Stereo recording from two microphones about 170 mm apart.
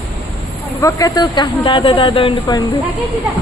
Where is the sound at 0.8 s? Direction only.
20° left (ahead or behind).